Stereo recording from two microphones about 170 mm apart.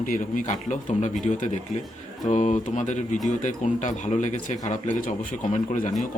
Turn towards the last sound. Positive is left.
turn(degrees=45)  # may be behind; listen again after turning